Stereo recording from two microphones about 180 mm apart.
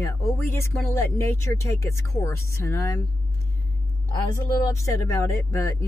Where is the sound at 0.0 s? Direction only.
15° left (ahead or behind).